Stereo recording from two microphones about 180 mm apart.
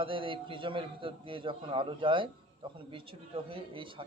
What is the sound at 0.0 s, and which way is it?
A man's voice, 30° right (ahead or behind).